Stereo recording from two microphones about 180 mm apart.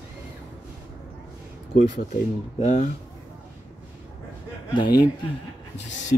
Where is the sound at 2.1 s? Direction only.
45° left (ahead or behind).